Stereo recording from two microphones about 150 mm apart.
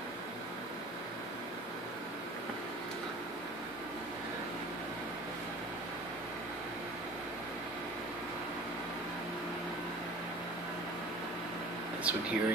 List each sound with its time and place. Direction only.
12.0 s speech: 10° right (ahead or behind)